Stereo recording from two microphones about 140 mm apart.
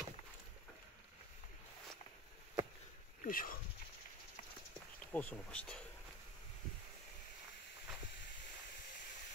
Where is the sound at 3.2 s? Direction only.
85° left.